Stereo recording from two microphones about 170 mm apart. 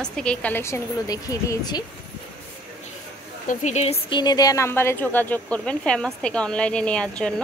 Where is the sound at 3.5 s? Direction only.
45° left (ahead or behind).